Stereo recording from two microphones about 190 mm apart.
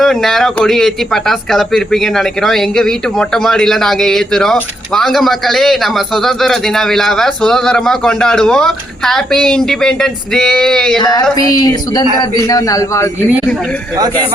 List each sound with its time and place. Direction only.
0.0 s speech: centre (ahead or behind)
10.9 s a sound: 20° left (ahead or behind)
12.2 s a man's voice: 20° left (ahead or behind)